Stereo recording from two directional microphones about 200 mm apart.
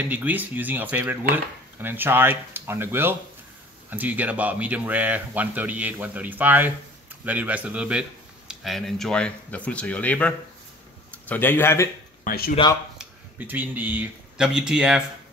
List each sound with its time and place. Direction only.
0.1 s speech: 10° right (ahead or behind); by 11.9 s 10° left (ahead or behind)
12.3 s speech: 45° left (ahead or behind)
12.9 s speech: 10° right (ahead or behind)